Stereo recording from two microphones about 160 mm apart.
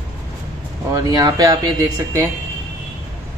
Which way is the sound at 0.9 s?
20° right (ahead or behind).